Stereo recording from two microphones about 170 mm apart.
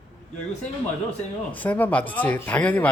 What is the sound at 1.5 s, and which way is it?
Speech, 10° left (ahead or behind).